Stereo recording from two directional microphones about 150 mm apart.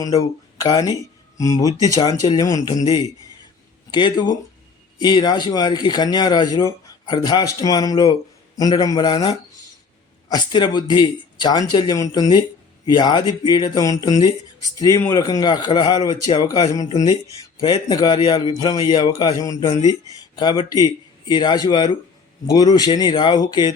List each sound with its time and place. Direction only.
0.6 s speech: 25° left (ahead or behind)